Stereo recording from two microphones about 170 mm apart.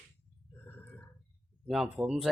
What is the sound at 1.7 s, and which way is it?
Speech, centre (ahead or behind).